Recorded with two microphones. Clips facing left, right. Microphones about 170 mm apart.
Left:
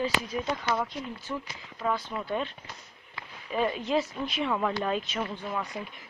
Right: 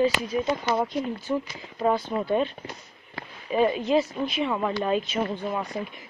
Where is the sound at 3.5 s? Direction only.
15° right (ahead or behind).